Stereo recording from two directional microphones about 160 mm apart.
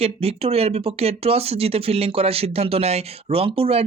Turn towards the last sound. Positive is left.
turn(degrees=-35)  # may be behind; listen again after turning